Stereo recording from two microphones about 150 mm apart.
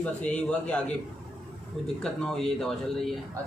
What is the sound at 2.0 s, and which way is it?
A man's voice, 5° left (ahead or behind).